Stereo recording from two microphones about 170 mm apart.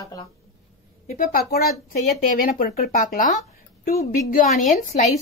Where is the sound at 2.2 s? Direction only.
50° left (ahead or behind).